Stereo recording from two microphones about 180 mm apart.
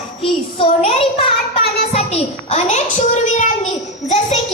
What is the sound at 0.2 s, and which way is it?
Child singing, 30° left (ahead or behind).